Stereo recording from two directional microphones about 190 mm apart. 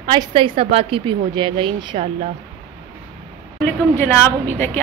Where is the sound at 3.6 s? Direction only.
10° left (ahead or behind).